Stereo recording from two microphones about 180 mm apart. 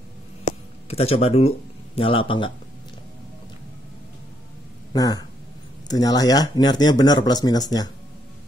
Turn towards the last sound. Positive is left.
turn(degrees=20)  # may be behind; listen again after turning